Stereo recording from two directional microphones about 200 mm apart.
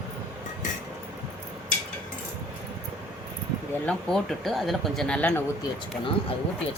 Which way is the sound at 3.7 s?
5° left (ahead or behind).